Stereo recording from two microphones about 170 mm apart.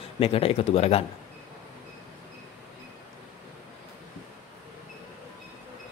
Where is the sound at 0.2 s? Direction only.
35° left (ahead or behind).